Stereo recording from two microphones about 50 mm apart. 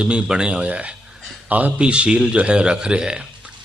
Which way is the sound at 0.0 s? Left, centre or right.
Right.